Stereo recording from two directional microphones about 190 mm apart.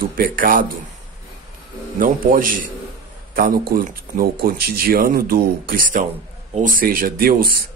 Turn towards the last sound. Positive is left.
turn(degrees=-50)  # may be behind; listen again after turning